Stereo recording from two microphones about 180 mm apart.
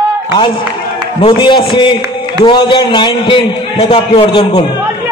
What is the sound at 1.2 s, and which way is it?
A man's voice, 30° left (ahead or behind).